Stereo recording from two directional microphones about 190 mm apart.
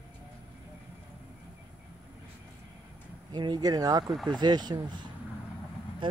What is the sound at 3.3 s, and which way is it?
Speech, 25° right (ahead or behind).